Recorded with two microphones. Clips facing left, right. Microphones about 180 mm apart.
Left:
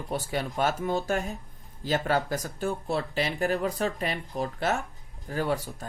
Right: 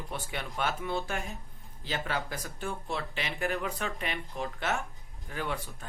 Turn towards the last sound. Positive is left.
turn(degrees=40)  # may be behind; listen again after turning